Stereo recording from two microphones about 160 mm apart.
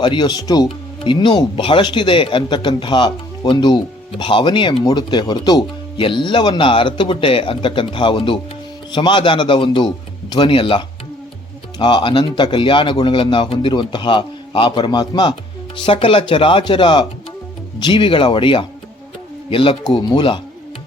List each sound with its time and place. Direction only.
0.0 s speech: 30° left (ahead or behind)